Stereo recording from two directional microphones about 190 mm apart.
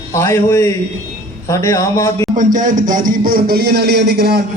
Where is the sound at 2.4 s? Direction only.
40° right (ahead or behind).